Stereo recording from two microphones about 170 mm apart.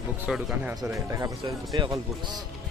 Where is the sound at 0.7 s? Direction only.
20° right (ahead or behind).